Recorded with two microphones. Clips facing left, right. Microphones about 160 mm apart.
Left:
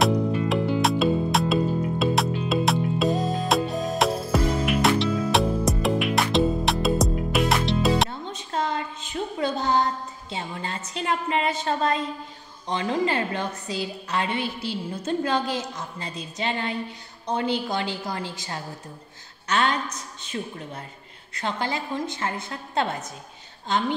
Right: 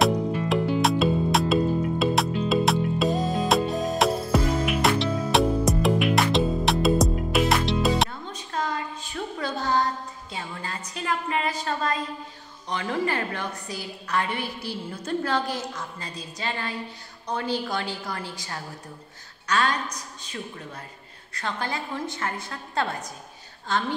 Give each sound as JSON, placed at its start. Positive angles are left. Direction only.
{"t": 0.0, "sound": "music", "side_deg": 0}
{"t": 8.1, "sound": "a sound", "side_deg": 25}
{"t": 12.6, "sound": "a woman's voice", "side_deg": 25}